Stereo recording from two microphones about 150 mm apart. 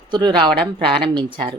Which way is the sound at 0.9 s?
35° right (ahead or behind).